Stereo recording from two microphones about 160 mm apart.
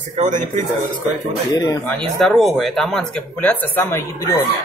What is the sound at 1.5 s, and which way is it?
Speech, 25° left (ahead or behind).